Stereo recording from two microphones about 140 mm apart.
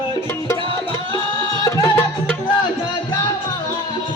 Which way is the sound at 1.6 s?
20° left (ahead or behind).